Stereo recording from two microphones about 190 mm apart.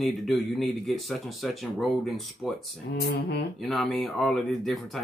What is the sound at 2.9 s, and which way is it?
Speech, 55° left (ahead or behind).